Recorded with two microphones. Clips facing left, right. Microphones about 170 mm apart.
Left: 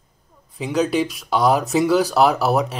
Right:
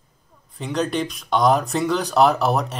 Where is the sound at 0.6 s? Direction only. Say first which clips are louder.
Left 4 dB; 5° left (ahead or behind).